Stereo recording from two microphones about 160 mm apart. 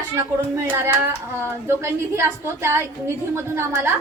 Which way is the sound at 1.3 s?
15° right (ahead or behind).